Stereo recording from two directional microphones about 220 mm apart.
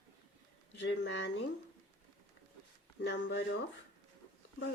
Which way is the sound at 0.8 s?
55° left (ahead or behind).